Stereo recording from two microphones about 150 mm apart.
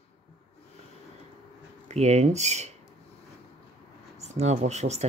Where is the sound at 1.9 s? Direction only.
45° right (ahead or behind).